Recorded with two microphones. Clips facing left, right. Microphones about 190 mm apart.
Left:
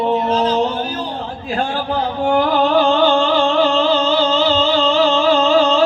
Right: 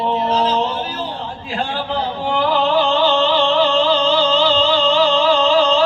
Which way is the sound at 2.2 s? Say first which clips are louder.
Left 3 dB; 50° left (ahead or behind).